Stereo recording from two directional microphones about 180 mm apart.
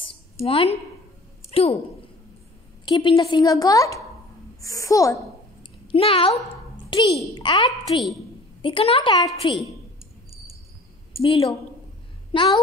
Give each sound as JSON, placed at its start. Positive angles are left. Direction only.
{"t": 0.5, "sound": "a woman's voice", "side_deg": 35}
{"t": 2.8, "sound": "a woman's voice", "side_deg": 25}
{"t": 4.6, "sound": "a sound", "side_deg": 20}
{"t": 6.9, "sound": "a child's voice", "side_deg": 30}
{"t": 7.8, "sound": "a woman's voice", "side_deg": 0}
{"t": 8.6, "sound": "a woman's voice", "side_deg": 30}
{"t": 11.2, "sound": "a woman's voice", "side_deg": 30}